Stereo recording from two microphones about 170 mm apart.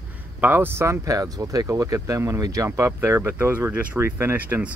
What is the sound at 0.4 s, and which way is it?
Speech, 10° right (ahead or behind).